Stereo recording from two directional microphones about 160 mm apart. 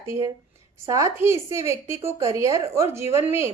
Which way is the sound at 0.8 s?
20° right (ahead or behind).